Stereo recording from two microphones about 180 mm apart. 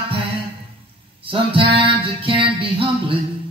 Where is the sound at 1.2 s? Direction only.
30° right (ahead or behind).